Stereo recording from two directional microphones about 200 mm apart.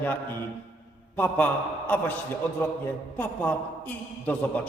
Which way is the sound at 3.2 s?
10° left (ahead or behind).